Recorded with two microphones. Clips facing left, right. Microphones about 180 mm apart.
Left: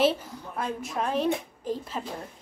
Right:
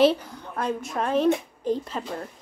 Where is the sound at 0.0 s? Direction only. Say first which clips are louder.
Right 4 dB; 5° left (ahead or behind).